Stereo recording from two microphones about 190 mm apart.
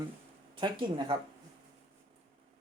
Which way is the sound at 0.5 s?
25° right (ahead or behind).